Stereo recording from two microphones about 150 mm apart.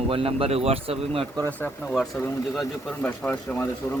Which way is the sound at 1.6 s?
5° left (ahead or behind).